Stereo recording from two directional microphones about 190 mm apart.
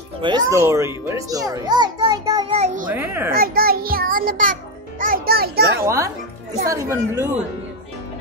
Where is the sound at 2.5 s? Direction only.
35° right (ahead or behind).